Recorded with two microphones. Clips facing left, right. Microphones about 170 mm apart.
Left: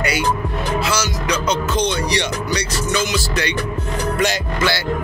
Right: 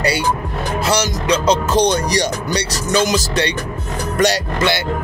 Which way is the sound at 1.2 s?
30° right (ahead or behind).